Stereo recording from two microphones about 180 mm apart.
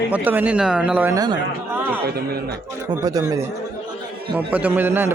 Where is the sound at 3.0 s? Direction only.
20° right (ahead or behind).